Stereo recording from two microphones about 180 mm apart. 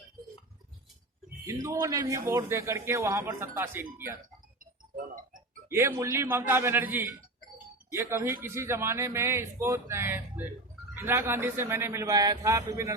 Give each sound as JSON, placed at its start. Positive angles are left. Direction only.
{"t": 1.5, "sound": "a man's voice", "side_deg": -15}
{"t": 4.9, "sound": "speech", "side_deg": -50}
{"t": 5.6, "sound": "a man's voice", "side_deg": -15}